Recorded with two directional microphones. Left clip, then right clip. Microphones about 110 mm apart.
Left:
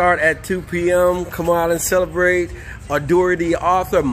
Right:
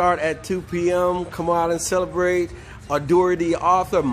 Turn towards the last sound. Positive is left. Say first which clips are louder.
# left 2 dB
turn(degrees=-5)  # may be behind; listen again after turning